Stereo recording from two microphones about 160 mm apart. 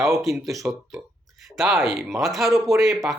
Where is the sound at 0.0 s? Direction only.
Centre (ahead or behind).